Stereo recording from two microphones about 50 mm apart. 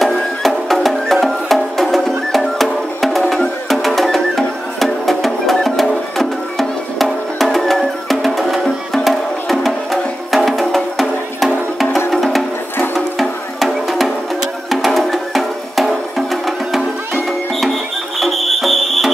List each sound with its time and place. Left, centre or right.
0.0 s music: centre
18.2 s fire alarm: centre